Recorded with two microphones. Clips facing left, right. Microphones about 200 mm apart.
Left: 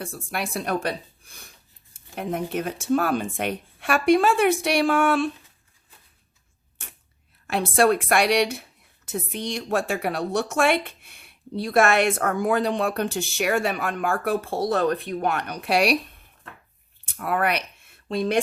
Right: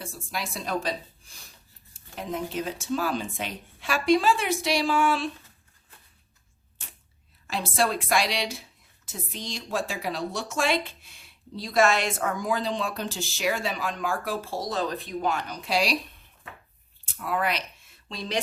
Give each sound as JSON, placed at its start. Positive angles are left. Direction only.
{"t": 0.0, "sound": "a woman's voice", "side_deg": 60}
{"t": 7.4, "sound": "a woman's voice", "side_deg": 60}
{"t": 17.2, "sound": "speech", "side_deg": 60}